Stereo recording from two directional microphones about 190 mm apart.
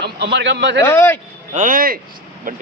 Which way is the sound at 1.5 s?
45° right (ahead or behind).